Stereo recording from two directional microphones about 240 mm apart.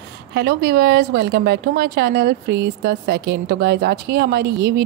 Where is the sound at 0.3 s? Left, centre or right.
Right.